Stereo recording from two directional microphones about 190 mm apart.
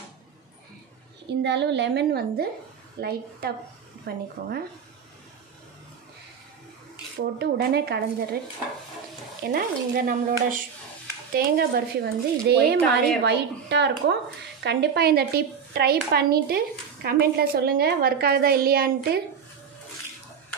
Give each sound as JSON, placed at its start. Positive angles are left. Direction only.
{"t": 1.4, "sound": "speech", "side_deg": -65}
{"t": 7.2, "sound": "speech", "side_deg": -55}
{"t": 9.4, "sound": "stir", "side_deg": -50}
{"t": 11.3, "sound": "speech", "side_deg": -55}